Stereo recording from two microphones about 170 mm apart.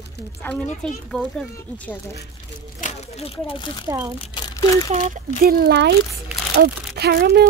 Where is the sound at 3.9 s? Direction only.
20° right (ahead or behind).